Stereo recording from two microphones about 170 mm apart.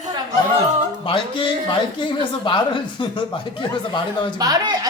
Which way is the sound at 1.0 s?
30° left (ahead or behind).